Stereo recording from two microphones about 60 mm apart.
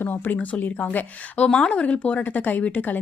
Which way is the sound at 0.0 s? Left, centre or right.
Left.